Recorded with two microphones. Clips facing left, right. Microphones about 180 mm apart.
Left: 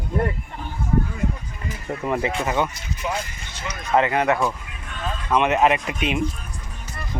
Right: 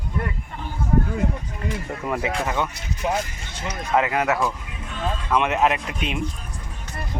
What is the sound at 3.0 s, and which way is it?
Speech, 50° right (ahead or behind).